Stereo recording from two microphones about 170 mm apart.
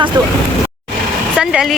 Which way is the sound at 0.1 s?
25° right (ahead or behind).